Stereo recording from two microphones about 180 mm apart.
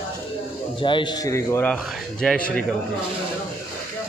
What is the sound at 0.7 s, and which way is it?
Speech, 25° left (ahead or behind).